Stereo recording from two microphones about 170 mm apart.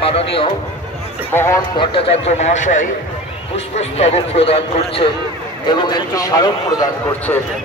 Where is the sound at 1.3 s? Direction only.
15° left (ahead or behind).